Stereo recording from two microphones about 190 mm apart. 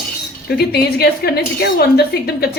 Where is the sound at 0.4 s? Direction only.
55° left (ahead or behind).